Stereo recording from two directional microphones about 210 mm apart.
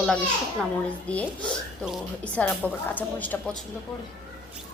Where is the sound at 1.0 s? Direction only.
5° left (ahead or behind).